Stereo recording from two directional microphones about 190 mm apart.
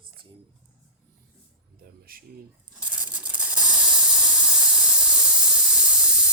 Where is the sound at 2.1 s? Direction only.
50° right (ahead or behind).